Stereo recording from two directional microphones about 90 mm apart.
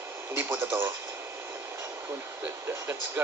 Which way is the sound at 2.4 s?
20° right (ahead or behind).